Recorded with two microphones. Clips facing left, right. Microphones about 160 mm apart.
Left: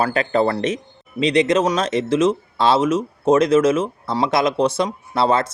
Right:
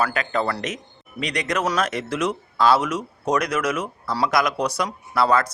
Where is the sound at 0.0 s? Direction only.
30° left (ahead or behind).